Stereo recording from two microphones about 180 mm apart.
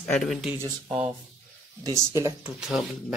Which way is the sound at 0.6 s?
15° right (ahead or behind).